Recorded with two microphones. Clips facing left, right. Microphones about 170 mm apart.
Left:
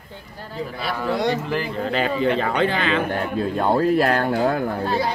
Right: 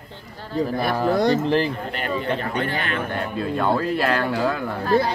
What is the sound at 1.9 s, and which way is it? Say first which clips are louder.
Speech: left 5 dB; 90° left.